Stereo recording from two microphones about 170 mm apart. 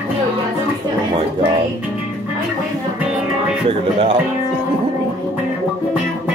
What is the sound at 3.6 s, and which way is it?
Music, 35° right (ahead or behind).